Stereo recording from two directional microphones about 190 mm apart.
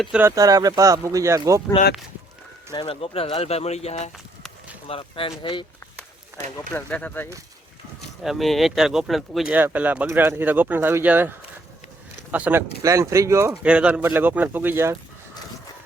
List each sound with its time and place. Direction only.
0.0 s speech: 10° right (ahead or behind)
2.7 s speech: 30° left (ahead or behind)
6.7 s speech: 10° left (ahead or behind); by 14.9 s 10° right (ahead or behind)